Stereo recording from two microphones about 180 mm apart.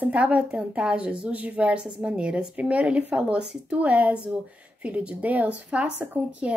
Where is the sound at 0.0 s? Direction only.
5° right (ahead or behind).